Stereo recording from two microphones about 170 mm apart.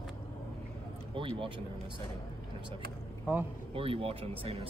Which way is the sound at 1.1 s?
30° right (ahead or behind).